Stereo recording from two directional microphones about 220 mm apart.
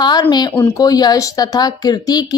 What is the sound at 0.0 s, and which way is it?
A woman's voice, 20° left (ahead or behind).